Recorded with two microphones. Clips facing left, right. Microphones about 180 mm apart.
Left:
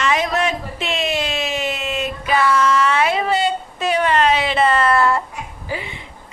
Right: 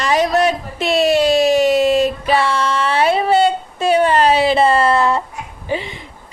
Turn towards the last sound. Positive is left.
turn(degrees=-25)  # may be behind; listen again after turning